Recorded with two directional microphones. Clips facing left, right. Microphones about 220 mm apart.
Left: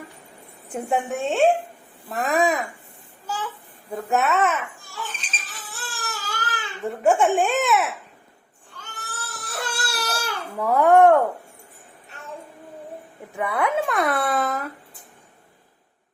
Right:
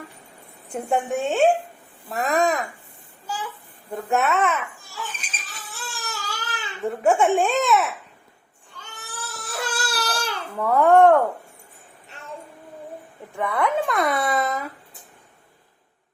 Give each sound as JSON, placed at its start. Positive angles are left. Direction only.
{"t": 0.7, "sound": "speech", "side_deg": 0}
{"t": 3.2, "sound": "speech", "side_deg": -10}
{"t": 5.1, "sound": "crying", "side_deg": -10}
{"t": 9.4, "sound": "baby cry", "side_deg": 0}
{"t": 13.3, "sound": "speech", "side_deg": 5}